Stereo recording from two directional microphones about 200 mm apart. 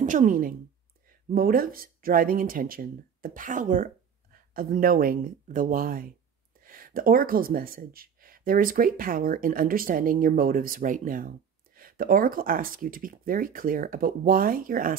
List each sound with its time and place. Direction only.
0.0 s a woman's voice: 40° right (ahead or behind)